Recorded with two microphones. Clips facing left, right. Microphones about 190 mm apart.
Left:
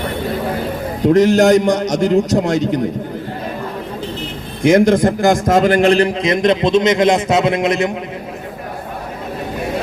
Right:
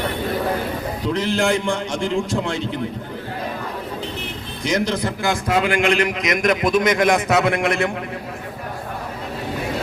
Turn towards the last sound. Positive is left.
turn(degrees=20)  # may be behind; listen again after turning